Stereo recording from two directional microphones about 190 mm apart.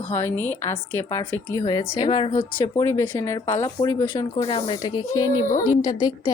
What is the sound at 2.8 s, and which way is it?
A woman's voice, 15° left (ahead or behind).